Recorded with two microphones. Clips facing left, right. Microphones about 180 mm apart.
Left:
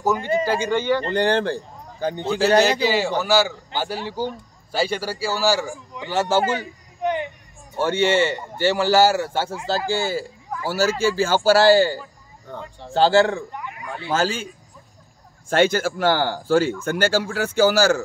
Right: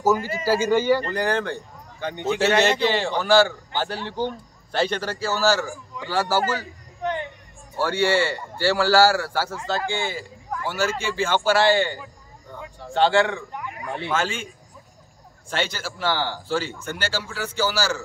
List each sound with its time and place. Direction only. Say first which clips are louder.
0.0 s speech: left 1 dB; 5° right (ahead or behind)
1.0 s speech: left 4 dB; 30° left (ahead or behind)
2.2 s a man's voice: left 2 dB; centre (ahead or behind); by 9.6 s 25° left (ahead or behind)
9.8 s speech: left 4 dB; 40° left (ahead or behind)
15.5 s speech: left 10 dB; 50° left (ahead or behind)